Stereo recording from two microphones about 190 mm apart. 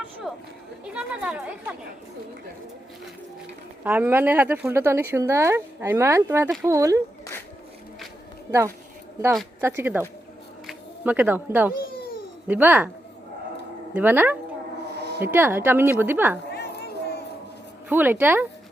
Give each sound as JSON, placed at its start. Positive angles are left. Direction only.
{"t": 0.3, "sound": "chatter", "side_deg": -5}
{"t": 0.9, "sound": "speech", "side_deg": -5}
{"t": 3.8, "sound": "speech", "side_deg": -10}
{"t": 9.6, "sound": "speech", "side_deg": -10}
{"t": 13.9, "sound": "speech", "side_deg": -10}
{"t": 14.9, "sound": "a sound", "side_deg": -60}
{"t": 15.2, "sound": "speech", "side_deg": -10}
{"t": 16.5, "sound": "a sound", "side_deg": 60}
{"t": 17.8, "sound": "speech", "side_deg": -10}